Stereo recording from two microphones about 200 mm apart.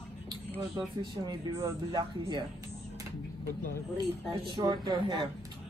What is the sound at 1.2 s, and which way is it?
Speech, 20° right (ahead or behind).